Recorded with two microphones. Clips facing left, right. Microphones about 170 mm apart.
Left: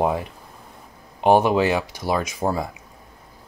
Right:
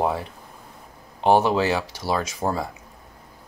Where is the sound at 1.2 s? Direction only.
15° left (ahead or behind).